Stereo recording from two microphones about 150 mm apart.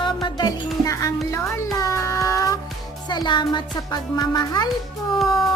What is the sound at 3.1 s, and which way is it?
Speech, 30° left (ahead or behind).